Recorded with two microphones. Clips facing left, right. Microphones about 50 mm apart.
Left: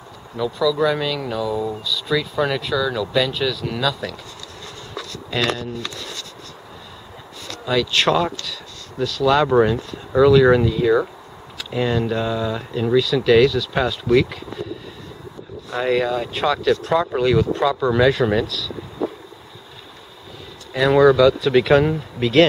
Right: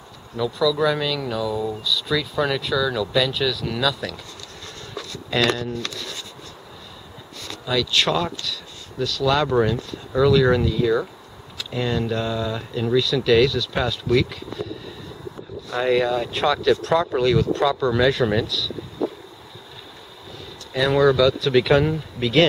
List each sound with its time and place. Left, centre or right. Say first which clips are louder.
0.4 s speech: left 1 dB; centre
5.3 s speech: right 1 dB; centre
7.6 s speech: left 3 dB; centre
15.7 s speech: even; centre
20.7 s speech: left 4 dB; centre